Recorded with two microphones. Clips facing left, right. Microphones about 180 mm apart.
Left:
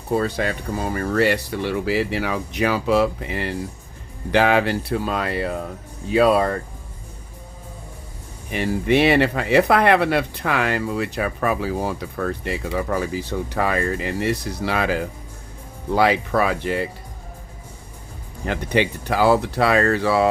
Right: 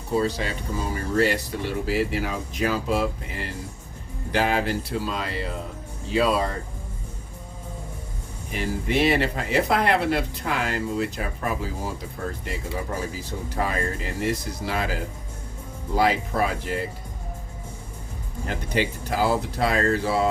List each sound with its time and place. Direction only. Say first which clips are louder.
0.1 s speech: left 3 dB; 55° left (ahead or behind)
8.5 s speech: left 6 dB; 70° left (ahead or behind)
18.4 s speech: left 5 dB; 70° left (ahead or behind)